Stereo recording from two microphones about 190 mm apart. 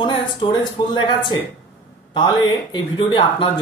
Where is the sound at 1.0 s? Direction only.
25° left (ahead or behind).